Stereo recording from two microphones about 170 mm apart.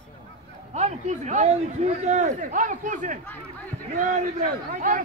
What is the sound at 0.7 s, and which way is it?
A man's voice, 40° right (ahead or behind).